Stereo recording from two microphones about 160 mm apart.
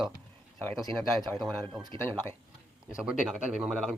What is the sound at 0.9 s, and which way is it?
Speech, centre (ahead or behind).